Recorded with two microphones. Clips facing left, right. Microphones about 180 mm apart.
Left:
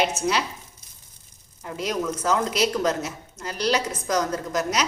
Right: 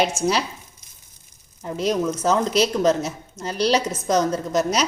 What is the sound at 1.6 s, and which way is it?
A woman's voice, 30° right (ahead or behind).